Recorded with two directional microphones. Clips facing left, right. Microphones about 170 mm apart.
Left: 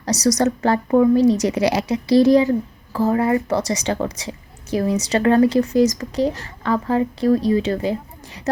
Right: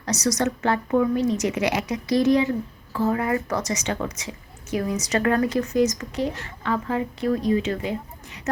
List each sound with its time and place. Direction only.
0.0 s speech: 35° left (ahead or behind)